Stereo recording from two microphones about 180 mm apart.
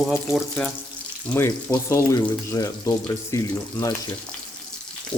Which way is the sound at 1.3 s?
15° left (ahead or behind).